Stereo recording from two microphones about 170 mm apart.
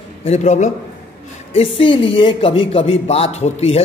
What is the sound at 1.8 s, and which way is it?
A man's voice, 30° left (ahead or behind).